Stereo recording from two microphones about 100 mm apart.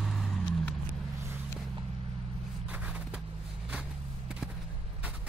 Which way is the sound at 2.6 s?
15° right (ahead or behind).